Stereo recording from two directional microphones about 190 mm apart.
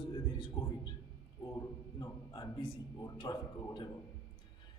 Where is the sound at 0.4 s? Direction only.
25° left (ahead or behind).